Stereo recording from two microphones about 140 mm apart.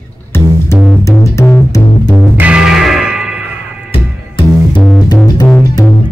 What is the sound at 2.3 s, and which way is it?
Music, 10° right (ahead or behind).